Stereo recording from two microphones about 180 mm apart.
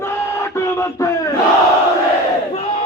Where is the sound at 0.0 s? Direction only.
15° left (ahead or behind).